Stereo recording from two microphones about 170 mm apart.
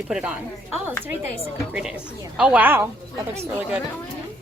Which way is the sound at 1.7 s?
5° right (ahead or behind).